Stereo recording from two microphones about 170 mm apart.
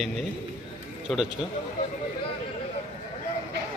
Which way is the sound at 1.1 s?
Centre (ahead or behind).